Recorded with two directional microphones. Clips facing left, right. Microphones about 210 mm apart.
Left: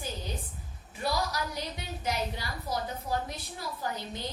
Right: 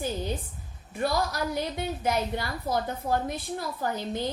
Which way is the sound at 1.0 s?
55° right (ahead or behind).